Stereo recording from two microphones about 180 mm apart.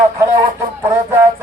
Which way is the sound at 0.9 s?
15° right (ahead or behind).